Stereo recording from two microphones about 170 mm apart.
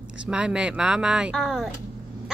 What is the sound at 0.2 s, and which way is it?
Speech, 5° right (ahead or behind).